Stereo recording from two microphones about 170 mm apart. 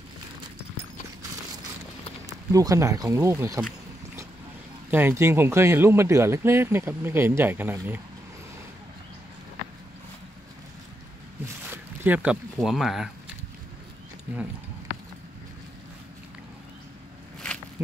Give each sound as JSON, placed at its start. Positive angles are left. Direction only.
{"t": 2.5, "sound": "speech", "side_deg": -20}
{"t": 4.9, "sound": "speech", "side_deg": -15}
{"t": 11.6, "sound": "zipper", "side_deg": -10}
{"t": 12.5, "sound": "speech", "side_deg": 0}
{"t": 17.8, "sound": "speech", "side_deg": -10}